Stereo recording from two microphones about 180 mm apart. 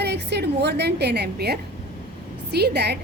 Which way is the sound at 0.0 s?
65° right (ahead or behind).